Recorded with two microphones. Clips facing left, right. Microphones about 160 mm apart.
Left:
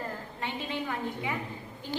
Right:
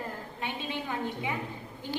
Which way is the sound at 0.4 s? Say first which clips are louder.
Left 1 dB; 20° right (ahead or behind).